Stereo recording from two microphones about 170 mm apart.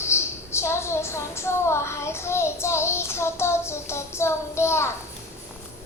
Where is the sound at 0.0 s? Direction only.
15° left (ahead or behind).